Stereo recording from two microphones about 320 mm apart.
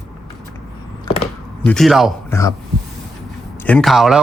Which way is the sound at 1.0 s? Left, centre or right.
Centre.